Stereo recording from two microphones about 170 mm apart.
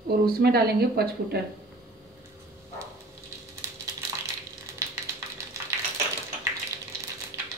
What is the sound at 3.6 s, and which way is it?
Crushing, 15° right (ahead or behind).